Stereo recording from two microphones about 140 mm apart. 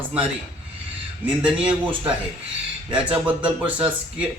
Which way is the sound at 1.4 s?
10° right (ahead or behind).